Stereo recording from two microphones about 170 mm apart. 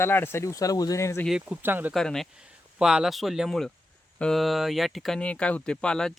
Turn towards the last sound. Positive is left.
turn(degrees=5)  # may be behind; listen again after turning